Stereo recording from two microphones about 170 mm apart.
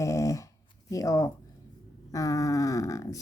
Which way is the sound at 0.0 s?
20° left (ahead or behind).